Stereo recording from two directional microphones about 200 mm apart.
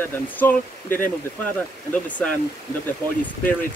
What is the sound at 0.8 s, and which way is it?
Speech, 45° left (ahead or behind).